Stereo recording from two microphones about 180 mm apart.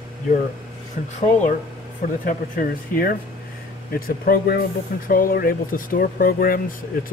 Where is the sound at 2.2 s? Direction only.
50° left (ahead or behind).